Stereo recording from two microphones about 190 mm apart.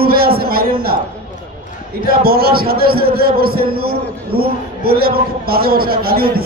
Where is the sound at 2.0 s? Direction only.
55° right (ahead or behind).